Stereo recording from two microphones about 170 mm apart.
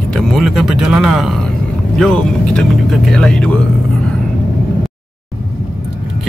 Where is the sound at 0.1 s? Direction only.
Centre (ahead or behind).